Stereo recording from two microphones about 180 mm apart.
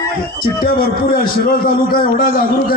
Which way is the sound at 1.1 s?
55° left (ahead or behind).